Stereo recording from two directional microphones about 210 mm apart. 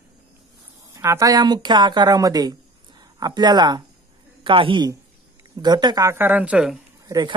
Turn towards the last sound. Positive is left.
turn(degrees=-20)  # may be behind; listen again after turning